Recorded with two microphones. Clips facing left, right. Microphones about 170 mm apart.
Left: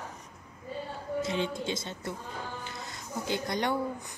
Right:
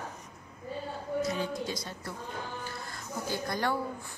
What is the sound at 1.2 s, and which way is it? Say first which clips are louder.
A woman's voice: left 3 dB; 25° left (ahead or behind).